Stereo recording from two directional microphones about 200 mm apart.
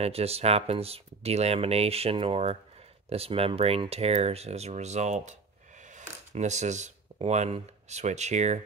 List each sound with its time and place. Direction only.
0.0 s speech: 30° right (ahead or behind)